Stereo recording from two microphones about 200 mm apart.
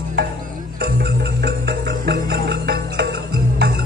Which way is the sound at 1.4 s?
55° right (ahead or behind).